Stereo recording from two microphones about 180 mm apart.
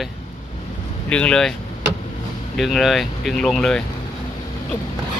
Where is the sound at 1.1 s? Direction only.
5° left (ahead or behind).